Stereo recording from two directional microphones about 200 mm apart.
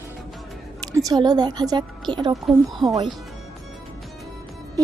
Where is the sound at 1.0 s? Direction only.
20° right (ahead or behind).